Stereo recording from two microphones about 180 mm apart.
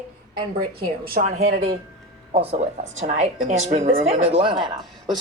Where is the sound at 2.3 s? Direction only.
40° right (ahead or behind).